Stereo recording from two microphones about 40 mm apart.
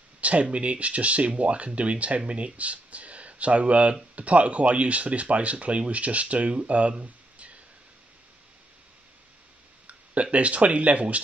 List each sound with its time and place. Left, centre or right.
0.2 s speech: right
9.8 s speech: right